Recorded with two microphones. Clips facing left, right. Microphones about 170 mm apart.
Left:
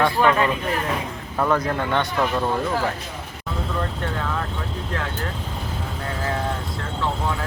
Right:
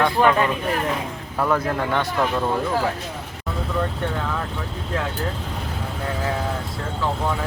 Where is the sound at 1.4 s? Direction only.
5° right (ahead or behind).